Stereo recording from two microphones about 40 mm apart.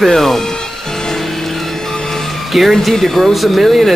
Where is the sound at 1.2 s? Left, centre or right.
Centre.